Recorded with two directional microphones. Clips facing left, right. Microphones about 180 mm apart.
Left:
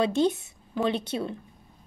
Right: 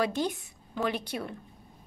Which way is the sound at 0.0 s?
25° left (ahead or behind).